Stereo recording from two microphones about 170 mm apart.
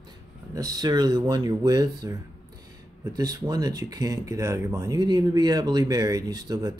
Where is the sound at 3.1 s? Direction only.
20° right (ahead or behind).